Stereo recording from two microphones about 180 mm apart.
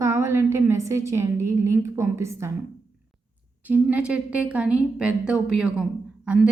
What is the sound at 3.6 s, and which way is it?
A woman's voice, 10° right (ahead or behind).